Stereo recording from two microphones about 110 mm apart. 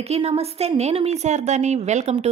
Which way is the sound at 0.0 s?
70° right (ahead or behind).